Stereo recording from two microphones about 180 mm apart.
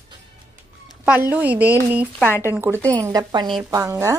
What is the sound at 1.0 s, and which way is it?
Speech, 10° right (ahead or behind).